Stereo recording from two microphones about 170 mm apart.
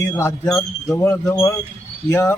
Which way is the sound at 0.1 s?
15° left (ahead or behind).